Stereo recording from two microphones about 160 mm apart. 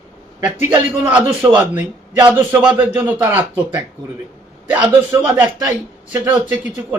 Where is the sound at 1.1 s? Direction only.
10° right (ahead or behind).